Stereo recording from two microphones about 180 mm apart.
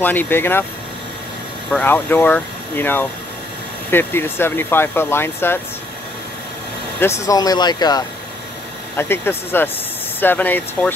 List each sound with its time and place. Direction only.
0.0 s speech: 10° left (ahead or behind)
1.7 s speech: 10° left (ahead or behind)
7.0 s speech: 15° left (ahead or behind)